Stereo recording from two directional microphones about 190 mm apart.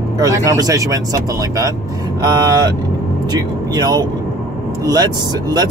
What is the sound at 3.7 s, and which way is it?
Speech, 20° right (ahead or behind).